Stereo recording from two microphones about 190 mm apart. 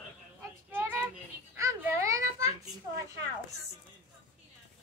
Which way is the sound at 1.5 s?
15° right (ahead or behind).